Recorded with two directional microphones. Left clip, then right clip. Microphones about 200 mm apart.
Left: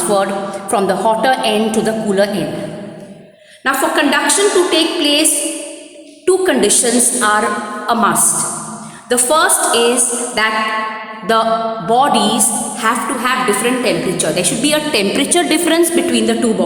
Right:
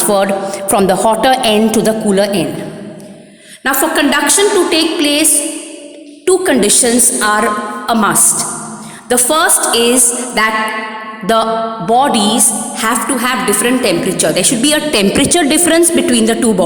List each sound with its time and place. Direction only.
0.1 s a woman's voice: 45° right (ahead or behind)
3.6 s a woman's voice: 55° right (ahead or behind)
6.2 s a woman's voice: 40° right (ahead or behind)
11.9 s a woman's voice: 35° right (ahead or behind)
12.8 s a woman's voice: 50° right (ahead or behind)